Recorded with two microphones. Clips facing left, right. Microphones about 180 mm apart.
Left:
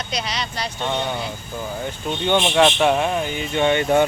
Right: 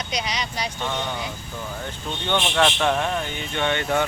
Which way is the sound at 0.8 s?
25° left (ahead or behind).